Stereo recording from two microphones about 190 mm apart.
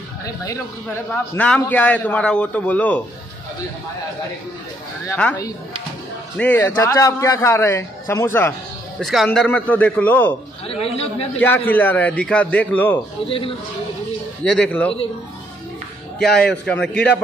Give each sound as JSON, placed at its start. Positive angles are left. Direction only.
{"t": 0.8, "sound": "a man's voice", "side_deg": 10}
{"t": 5.0, "sound": "a man's voice", "side_deg": 10}
{"t": 9.0, "sound": "a man's voice", "side_deg": 0}
{"t": 10.7, "sound": "speech", "side_deg": 30}
{"t": 11.3, "sound": "a man's voice", "side_deg": 10}
{"t": 14.4, "sound": "a man's voice", "side_deg": 5}
{"t": 16.2, "sound": "a man's voice", "side_deg": 5}